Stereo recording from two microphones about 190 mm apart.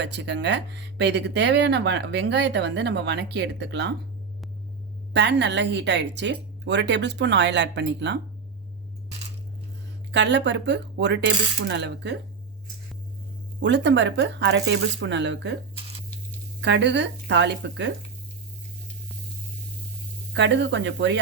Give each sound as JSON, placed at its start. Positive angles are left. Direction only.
{"t": 0.0, "sound": "speech", "side_deg": -65}
{"t": 5.1, "sound": "a woman's voice", "side_deg": -65}
{"t": 10.1, "sound": "speech", "side_deg": -65}
{"t": 13.6, "sound": "a woman's voice", "side_deg": -70}
{"t": 16.6, "sound": "speech", "side_deg": -65}
{"t": 20.3, "sound": "a woman's voice", "side_deg": -65}